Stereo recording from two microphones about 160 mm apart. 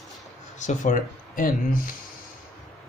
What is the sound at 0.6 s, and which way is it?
Speech, 50° left (ahead or behind).